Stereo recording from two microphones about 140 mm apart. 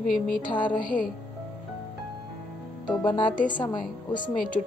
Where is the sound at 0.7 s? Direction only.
75° left (ahead or behind).